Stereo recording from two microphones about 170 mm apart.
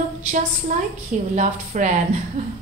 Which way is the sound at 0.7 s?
45° right (ahead or behind).